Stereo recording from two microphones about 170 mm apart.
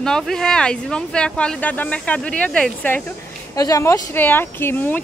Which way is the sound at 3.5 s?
20° left (ahead or behind).